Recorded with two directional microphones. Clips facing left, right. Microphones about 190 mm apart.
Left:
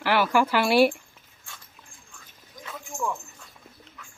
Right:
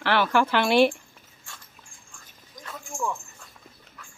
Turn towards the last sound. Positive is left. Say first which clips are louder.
# even
turn(degrees=5)  # may be behind; listen again after turning